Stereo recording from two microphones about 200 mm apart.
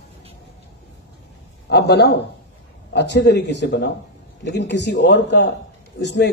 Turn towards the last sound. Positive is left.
turn(degrees=60)  # may be behind; listen again after turning